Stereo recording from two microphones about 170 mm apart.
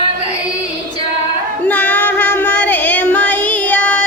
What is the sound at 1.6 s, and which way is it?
Child singing, 10° left (ahead or behind).